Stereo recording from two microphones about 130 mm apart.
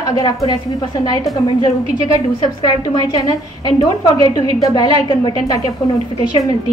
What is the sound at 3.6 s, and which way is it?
A woman's voice, 30° left (ahead or behind).